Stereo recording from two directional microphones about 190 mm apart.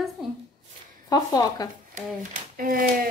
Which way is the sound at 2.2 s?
45° right (ahead or behind).